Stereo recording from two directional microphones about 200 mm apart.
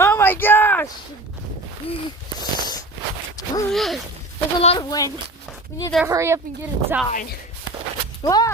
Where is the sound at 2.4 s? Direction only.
20° left (ahead or behind).